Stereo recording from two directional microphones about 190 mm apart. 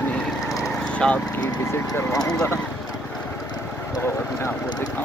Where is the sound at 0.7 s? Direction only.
5° left (ahead or behind).